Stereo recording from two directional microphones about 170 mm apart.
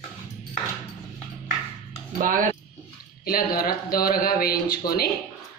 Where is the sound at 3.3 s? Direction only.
60° left (ahead or behind).